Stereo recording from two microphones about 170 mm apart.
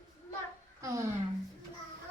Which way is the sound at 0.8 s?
20° right (ahead or behind).